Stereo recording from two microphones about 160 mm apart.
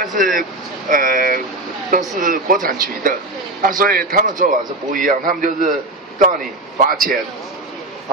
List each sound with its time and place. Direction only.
0.0 s a man's voice: 55° right (ahead or behind)